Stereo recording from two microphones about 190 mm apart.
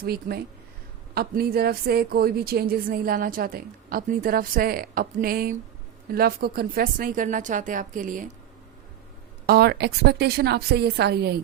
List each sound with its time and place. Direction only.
0.0 s a woman's voice: 55° right (ahead or behind)
9.5 s a woman's voice: 55° right (ahead or behind)